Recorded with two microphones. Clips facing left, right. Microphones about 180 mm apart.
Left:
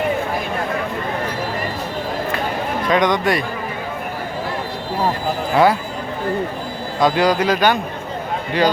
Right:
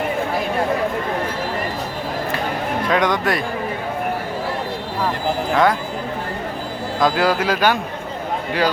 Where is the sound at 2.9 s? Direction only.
5° right (ahead or behind).